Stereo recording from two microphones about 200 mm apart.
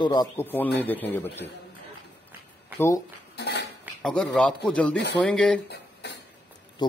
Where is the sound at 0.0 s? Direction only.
20° left (ahead or behind).